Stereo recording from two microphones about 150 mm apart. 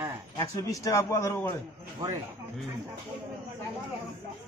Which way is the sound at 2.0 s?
25° right (ahead or behind).